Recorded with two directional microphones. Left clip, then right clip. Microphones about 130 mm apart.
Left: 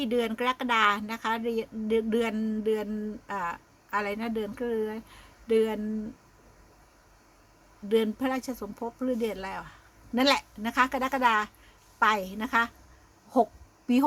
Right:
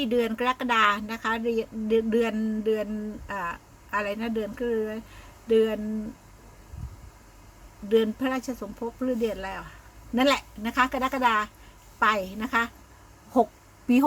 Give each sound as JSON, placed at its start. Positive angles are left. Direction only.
{"t": 0.0, "sound": "a woman's voice", "side_deg": 20}
{"t": 7.9, "sound": "a woman's voice", "side_deg": 25}
{"t": 13.3, "sound": "a sound", "side_deg": 5}